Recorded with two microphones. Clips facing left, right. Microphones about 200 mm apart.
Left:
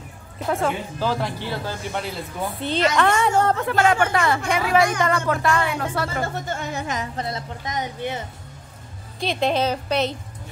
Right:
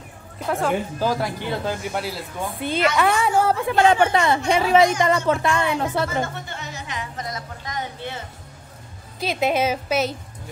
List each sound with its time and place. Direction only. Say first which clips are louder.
0.4 s speech: even; centre (ahead or behind)
0.9 s a woman's voice: right 1 dB; 10° right (ahead or behind)
6.2 s speech: left 4 dB; 45° left (ahead or behind)
7.2 s speech: left 3 dB; 30° left (ahead or behind)
9.2 s a woman's voice: even; 5° right (ahead or behind)